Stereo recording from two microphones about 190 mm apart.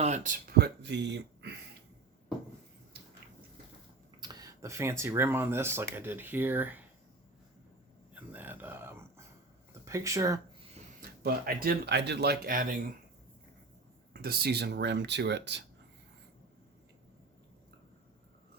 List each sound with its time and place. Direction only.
0.0 s speech: 40° right (ahead or behind); by 1.5 s 65° right (ahead or behind)
4.2 s speech: 20° right (ahead or behind)
8.1 s a sound: 10° right (ahead or behind)
9.8 s speech: 15° right (ahead or behind)
11.2 s speech: 50° right (ahead or behind)
14.1 s speech: 55° right (ahead or behind)